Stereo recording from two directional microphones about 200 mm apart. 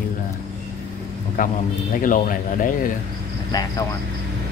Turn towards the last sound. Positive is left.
turn(degrees=20)  # may be behind; listen again after turning